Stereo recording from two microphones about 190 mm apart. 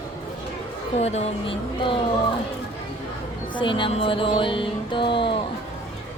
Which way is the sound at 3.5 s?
25° left (ahead or behind).